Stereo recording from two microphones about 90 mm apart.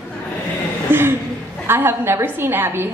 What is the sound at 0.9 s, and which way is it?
A woman's voice, 25° right (ahead or behind).